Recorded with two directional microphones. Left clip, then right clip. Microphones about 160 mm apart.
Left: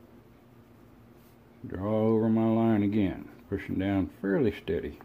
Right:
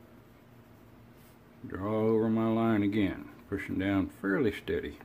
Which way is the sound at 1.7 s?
20° left (ahead or behind).